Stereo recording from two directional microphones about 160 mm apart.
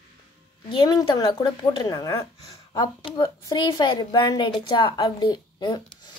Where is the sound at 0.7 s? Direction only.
25° left (ahead or behind).